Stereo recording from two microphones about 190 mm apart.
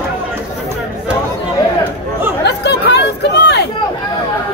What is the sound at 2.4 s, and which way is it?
Chatter, 60° left (ahead or behind).